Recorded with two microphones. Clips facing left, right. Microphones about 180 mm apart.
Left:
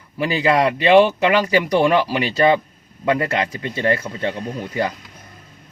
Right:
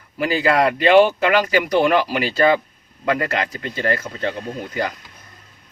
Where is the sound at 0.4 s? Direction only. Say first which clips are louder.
Even; 25° left (ahead or behind).